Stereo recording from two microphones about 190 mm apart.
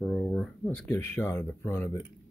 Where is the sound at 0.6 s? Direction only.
10° left (ahead or behind).